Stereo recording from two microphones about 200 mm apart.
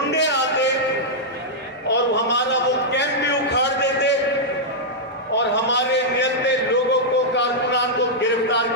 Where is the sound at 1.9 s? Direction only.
60° left (ahead or behind).